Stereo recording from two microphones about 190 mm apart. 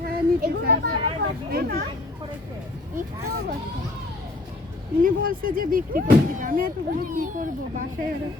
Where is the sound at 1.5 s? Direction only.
55° right (ahead or behind).